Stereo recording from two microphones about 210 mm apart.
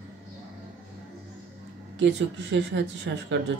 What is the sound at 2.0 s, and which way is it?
Speech, 55° right (ahead or behind).